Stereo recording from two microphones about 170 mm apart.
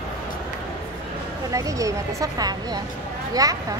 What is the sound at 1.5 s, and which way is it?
Speech, 20° right (ahead or behind).